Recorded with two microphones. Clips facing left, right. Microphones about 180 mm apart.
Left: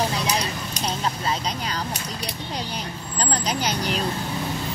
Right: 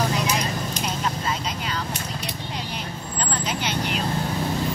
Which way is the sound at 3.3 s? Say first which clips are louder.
Left 3 dB; 40° left (ahead or behind).